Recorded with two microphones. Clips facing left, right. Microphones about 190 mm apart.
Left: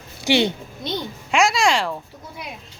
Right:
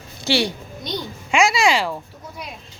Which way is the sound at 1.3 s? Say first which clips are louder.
Right 1 dB; centre (ahead or behind).